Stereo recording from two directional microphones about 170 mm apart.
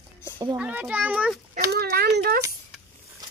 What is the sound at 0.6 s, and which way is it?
Speech, 10° right (ahead or behind).